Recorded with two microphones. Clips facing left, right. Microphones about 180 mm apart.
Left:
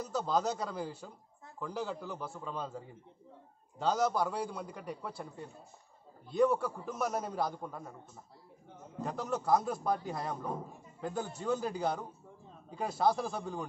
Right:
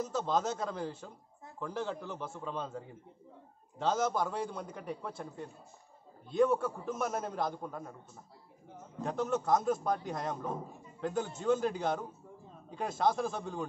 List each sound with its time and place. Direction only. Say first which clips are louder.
0.1 s a man's voice: left 4 dB; centre (ahead or behind)
3.8 s a man's voice: left 1 dB; centre (ahead or behind)
6.3 s a man's voice: even; centre (ahead or behind)
9.0 s a man's voice: right 2 dB; 5° left (ahead or behind)